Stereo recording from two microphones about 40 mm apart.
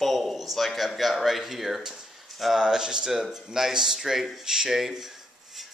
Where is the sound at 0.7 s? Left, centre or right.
Centre.